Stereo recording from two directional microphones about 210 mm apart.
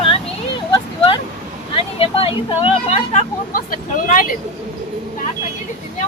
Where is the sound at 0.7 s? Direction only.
25° left (ahead or behind).